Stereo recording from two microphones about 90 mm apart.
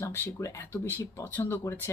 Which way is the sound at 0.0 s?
35° left (ahead or behind).